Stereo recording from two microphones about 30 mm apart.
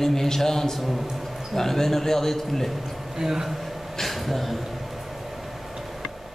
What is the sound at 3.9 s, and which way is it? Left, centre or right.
Speech, centre.